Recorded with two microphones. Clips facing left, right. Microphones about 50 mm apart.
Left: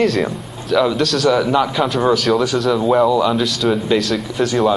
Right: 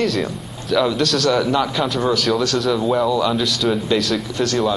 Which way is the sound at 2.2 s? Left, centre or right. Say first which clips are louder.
Left 3 dB; centre.